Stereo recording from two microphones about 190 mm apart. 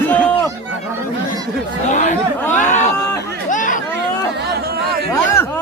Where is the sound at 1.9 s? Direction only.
40° left (ahead or behind).